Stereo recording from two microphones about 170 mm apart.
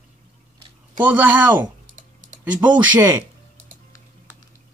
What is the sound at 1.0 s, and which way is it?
Speech, 10° right (ahead or behind).